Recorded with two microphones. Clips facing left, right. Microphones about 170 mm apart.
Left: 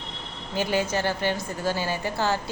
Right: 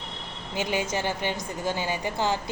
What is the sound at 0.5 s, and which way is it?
A woman's voice, 15° right (ahead or behind).